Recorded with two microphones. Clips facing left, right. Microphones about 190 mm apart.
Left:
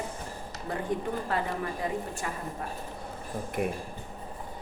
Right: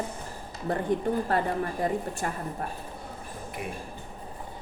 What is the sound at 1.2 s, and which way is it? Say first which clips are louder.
A woman's voice: right 4 dB; 50° right (ahead or behind).